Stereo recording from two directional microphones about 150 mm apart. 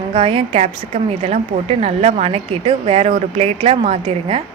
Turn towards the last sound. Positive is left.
turn(degrees=-40)  # may be behind; listen again after turning